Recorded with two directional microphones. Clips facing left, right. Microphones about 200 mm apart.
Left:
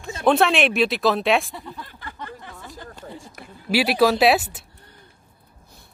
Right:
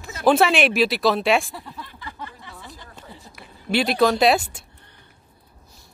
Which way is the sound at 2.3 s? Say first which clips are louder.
Left 3 dB; 45° left (ahead or behind).